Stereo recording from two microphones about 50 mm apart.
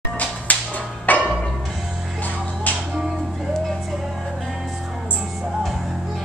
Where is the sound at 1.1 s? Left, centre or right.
Left.